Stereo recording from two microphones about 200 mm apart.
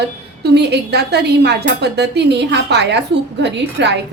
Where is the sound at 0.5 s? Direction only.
55° right (ahead or behind).